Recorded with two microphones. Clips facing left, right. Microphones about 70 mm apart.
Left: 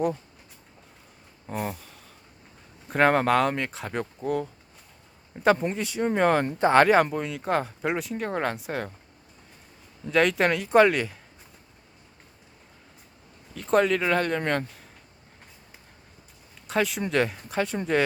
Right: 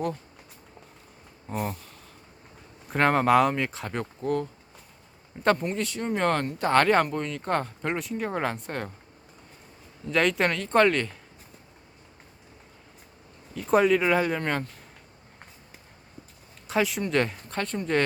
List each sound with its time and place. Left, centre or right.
1.5 s speech: centre
5.6 s speech: centre
10.1 s speech: centre
13.6 s speech: centre
16.6 s speech: centre